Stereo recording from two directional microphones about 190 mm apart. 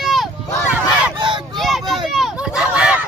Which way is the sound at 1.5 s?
Centre (ahead or behind).